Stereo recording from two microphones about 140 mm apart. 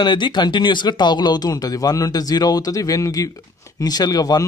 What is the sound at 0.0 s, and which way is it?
Speech, 35° left (ahead or behind).